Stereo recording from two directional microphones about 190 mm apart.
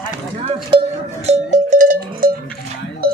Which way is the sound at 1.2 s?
35° right (ahead or behind).